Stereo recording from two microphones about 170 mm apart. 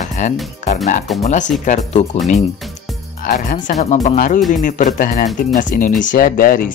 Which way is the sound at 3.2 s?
50° left (ahead or behind).